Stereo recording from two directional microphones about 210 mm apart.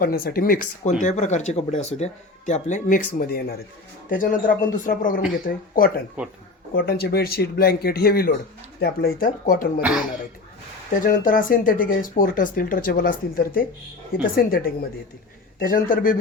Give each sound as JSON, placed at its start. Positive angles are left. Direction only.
{"t": 0.0, "sound": "speech", "side_deg": 45}
{"t": 6.2, "sound": "speech", "side_deg": -5}
{"t": 6.7, "sound": "speech", "side_deg": 45}
{"t": 11.0, "sound": "speech", "side_deg": 40}